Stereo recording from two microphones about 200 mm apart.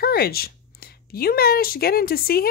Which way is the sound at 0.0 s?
50° left (ahead or behind).